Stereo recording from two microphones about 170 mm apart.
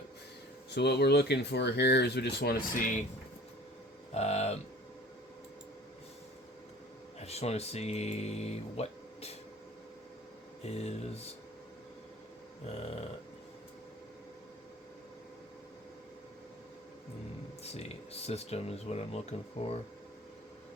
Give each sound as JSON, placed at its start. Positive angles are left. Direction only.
{"t": 0.7, "sound": "speech", "side_deg": 75}
{"t": 4.1, "sound": "speech", "side_deg": 40}
{"t": 7.2, "sound": "speech", "side_deg": 40}
{"t": 10.7, "sound": "speech", "side_deg": 40}
{"t": 12.6, "sound": "speech", "side_deg": 35}
{"t": 17.6, "sound": "speech", "side_deg": 40}